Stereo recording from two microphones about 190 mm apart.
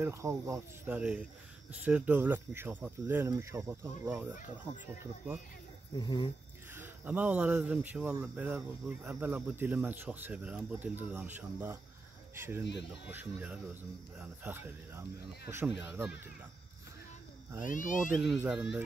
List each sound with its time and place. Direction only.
0.0 s speech: 15° right (ahead or behind)
5.9 s speech: 25° left (ahead or behind)
6.7 s speech: 10° right (ahead or behind)
17.6 s speech: 45° left (ahead or behind)
18.4 s speech: 5° right (ahead or behind)